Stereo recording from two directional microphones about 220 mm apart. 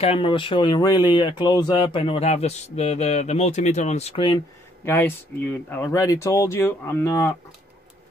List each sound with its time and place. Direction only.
0.0 s speech: 25° left (ahead or behind)
4.8 s speech: 10° left (ahead or behind)